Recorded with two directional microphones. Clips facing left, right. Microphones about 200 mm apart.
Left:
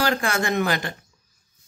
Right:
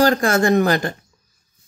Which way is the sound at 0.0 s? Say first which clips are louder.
Right 7 dB; 45° right (ahead or behind).